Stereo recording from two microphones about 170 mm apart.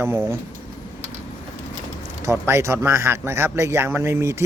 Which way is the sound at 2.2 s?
15° right (ahead or behind).